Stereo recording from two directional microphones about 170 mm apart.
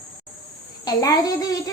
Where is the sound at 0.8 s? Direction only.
20° left (ahead or behind).